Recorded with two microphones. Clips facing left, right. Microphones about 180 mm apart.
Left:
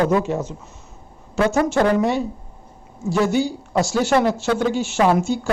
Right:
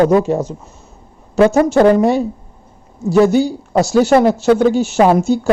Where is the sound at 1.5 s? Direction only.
35° right (ahead or behind).